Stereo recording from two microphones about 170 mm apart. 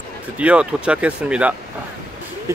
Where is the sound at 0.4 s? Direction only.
5° right (ahead or behind).